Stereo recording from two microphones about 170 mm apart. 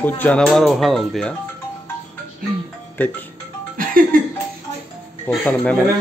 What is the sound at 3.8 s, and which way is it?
Music, 55° right (ahead or behind).